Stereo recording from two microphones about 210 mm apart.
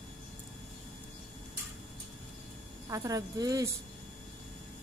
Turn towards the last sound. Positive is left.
turn(degrees=-15)  # may be behind; listen again after turning